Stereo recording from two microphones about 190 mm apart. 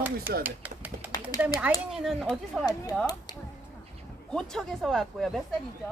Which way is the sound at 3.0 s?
20° left (ahead or behind).